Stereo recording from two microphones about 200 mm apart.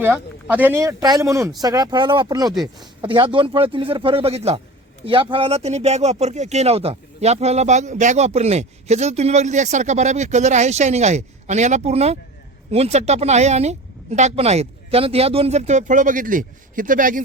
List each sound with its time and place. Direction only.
0.0 s speech: 10° right (ahead or behind)
2.5 s speech: centre (ahead or behind)
2.8 s speech: 25° right (ahead or behind); by 17.2 s 40° right (ahead or behind)